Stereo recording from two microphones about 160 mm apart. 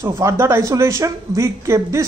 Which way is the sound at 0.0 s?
20° right (ahead or behind).